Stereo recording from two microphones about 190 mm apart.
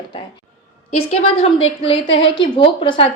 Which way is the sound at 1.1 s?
30° left (ahead or behind).